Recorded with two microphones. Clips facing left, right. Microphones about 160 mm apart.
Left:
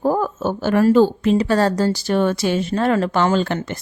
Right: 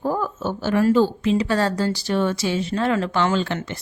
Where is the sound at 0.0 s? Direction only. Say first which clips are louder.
Left 5 dB; 45° left (ahead or behind).